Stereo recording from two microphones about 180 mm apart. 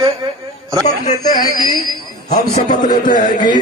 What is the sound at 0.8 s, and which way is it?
Speech, 40° left (ahead or behind).